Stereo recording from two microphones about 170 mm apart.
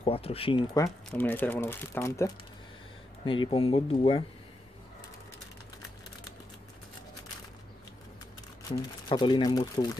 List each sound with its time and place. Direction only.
0.0 s speech: 35° left (ahead or behind)
0.7 s speech: 15° left (ahead or behind)
3.3 s speech: 30° left (ahead or behind)
9.1 s speech: 25° left (ahead or behind)